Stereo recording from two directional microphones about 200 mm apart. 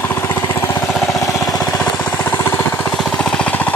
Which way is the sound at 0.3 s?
15° left (ahead or behind).